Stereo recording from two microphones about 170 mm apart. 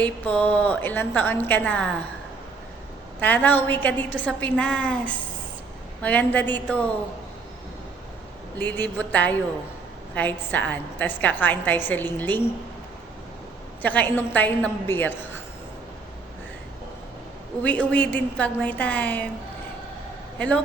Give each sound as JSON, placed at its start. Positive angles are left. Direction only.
{"t": 0.0, "sound": "a woman's voice", "side_deg": 5}
{"t": 3.2, "sound": "a woman's voice", "side_deg": 10}
{"t": 8.5, "sound": "a woman's voice", "side_deg": 10}
{"t": 13.8, "sound": "a woman's voice", "side_deg": 10}
{"t": 17.6, "sound": "a woman's voice", "side_deg": 10}